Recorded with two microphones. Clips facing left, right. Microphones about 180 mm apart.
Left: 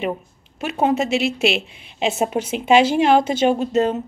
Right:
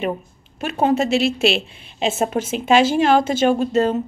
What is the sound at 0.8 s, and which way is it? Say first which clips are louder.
A woman's voice: right 2 dB; 20° left (ahead or behind).